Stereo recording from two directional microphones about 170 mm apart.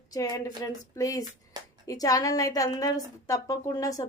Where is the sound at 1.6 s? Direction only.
25° right (ahead or behind).